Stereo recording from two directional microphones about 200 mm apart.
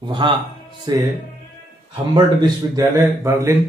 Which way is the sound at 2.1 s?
20° right (ahead or behind).